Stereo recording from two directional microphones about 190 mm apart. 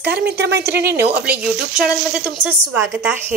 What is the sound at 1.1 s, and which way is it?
A woman's voice, 5° right (ahead or behind).